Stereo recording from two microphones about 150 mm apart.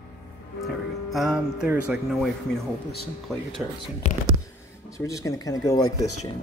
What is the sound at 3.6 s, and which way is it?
Speech, 5° right (ahead or behind).